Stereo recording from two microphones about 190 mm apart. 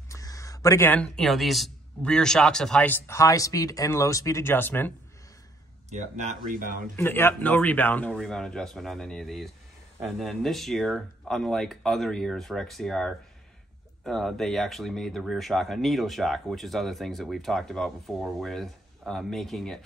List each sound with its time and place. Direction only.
0.1 s a man's voice: 15° left (ahead or behind)
5.9 s speech: 35° right (ahead or behind)
7.0 s speech: 10° left (ahead or behind)